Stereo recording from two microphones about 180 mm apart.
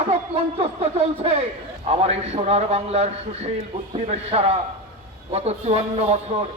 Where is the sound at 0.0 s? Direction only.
35° right (ahead or behind).